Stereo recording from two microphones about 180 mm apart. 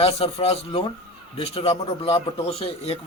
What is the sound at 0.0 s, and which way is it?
A man's voice, 35° left (ahead or behind).